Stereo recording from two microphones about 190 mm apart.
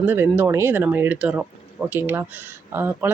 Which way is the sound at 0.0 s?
10° right (ahead or behind).